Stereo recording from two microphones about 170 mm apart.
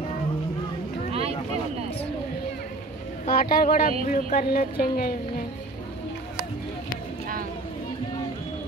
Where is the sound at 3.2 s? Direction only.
55° left (ahead or behind).